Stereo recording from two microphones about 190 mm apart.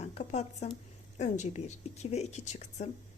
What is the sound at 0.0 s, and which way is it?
A woman's voice, 35° left (ahead or behind).